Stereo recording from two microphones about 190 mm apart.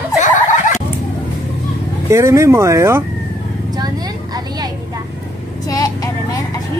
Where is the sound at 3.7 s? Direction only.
20° right (ahead or behind).